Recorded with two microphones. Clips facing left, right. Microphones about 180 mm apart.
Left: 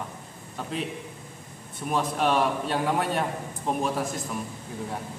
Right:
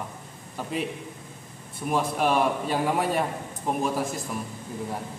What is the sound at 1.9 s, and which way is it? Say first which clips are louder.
A man's voice: right 1 dB; 5° right (ahead or behind).